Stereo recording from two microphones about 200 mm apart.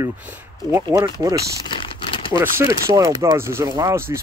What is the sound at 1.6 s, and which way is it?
Crumpling, 25° left (ahead or behind).